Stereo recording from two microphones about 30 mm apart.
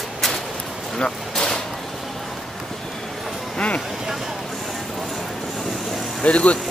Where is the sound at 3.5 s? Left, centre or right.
Left.